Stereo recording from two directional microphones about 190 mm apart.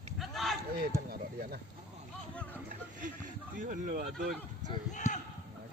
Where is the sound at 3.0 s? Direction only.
45° right (ahead or behind).